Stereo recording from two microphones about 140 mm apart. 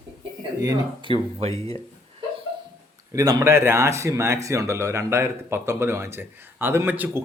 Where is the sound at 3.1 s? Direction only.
25° right (ahead or behind).